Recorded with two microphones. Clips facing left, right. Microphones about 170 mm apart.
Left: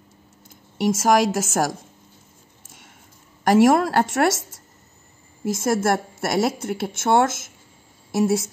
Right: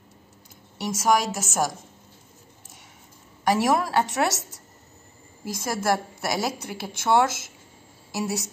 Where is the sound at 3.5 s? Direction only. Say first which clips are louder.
Left 6 dB; 55° left (ahead or behind).